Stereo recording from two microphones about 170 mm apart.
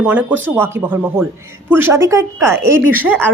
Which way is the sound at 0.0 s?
10° right (ahead or behind).